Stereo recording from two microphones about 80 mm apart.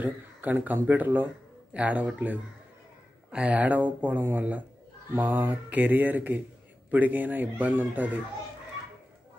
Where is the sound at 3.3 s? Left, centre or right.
Centre.